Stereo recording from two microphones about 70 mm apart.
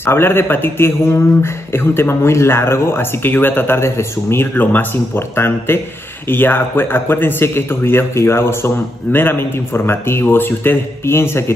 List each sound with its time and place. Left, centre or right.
0.0 s speech: left